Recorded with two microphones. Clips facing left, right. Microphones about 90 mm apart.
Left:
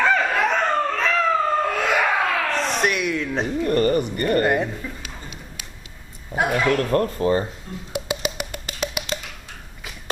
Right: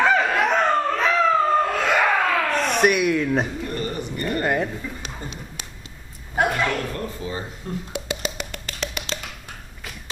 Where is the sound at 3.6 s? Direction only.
55° left (ahead or behind).